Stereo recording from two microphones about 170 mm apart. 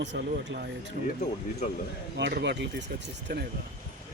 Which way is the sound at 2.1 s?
90° right.